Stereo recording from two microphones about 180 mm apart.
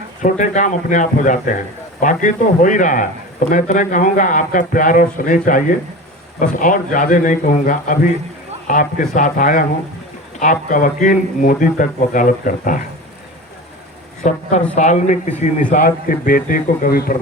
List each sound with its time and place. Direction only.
0.2 s a man's voice: 45° left (ahead or behind)
14.8 s a man's voice: 40° left (ahead or behind)